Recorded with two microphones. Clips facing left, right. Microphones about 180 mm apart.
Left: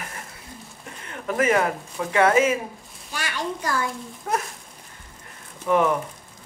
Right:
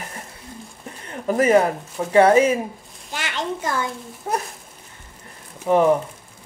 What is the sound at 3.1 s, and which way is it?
Speech, 20° right (ahead or behind).